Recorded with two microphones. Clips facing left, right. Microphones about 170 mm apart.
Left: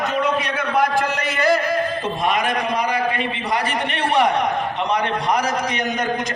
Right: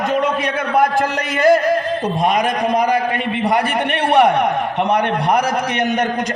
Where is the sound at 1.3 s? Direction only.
50° right (ahead or behind).